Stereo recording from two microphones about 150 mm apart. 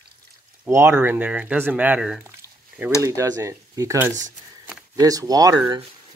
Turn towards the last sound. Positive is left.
turn(degrees=-25)  # may be behind; listen again after turning